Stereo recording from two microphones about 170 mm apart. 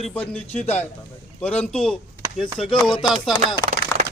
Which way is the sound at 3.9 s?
20° left (ahead or behind).